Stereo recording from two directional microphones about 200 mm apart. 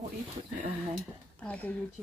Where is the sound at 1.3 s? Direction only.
5° left (ahead or behind).